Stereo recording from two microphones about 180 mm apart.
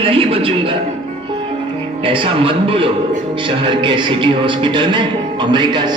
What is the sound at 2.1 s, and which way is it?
A man's voice, 30° right (ahead or behind).